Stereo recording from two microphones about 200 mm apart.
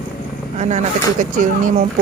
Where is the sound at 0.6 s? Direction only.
35° right (ahead or behind).